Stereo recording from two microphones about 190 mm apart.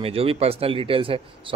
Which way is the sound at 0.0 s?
30° right (ahead or behind).